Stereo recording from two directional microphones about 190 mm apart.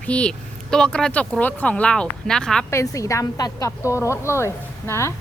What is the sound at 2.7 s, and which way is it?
A woman's voice, 15° left (ahead or behind).